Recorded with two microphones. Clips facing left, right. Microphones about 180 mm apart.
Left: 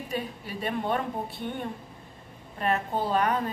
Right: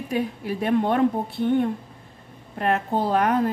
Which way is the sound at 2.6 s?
70° right (ahead or behind).